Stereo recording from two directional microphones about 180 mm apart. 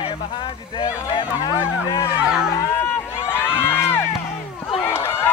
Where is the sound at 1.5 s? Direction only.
15° left (ahead or behind).